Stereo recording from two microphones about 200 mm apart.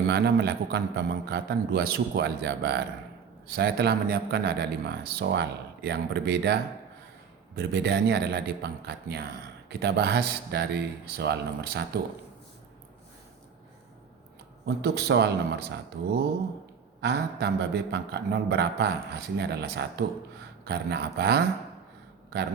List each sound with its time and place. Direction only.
0.1 s a man's voice: 55° right (ahead or behind)
14.8 s a man's voice: 55° right (ahead or behind)
17.0 s a man's voice: 55° right (ahead or behind)